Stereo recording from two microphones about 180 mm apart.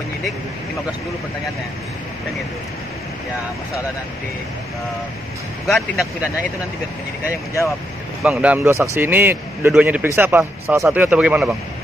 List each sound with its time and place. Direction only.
5.7 s speech: centre (ahead or behind)
8.2 s a man's voice: 5° right (ahead or behind)